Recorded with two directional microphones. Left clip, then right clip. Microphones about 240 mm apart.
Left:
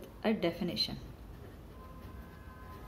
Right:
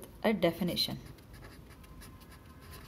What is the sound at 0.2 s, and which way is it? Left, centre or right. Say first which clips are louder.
Speech: right 3 dB; right.